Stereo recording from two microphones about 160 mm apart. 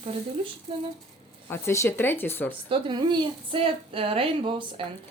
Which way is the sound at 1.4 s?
15° left (ahead or behind).